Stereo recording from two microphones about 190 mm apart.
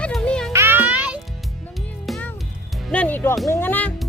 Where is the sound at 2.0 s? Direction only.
Centre (ahead or behind).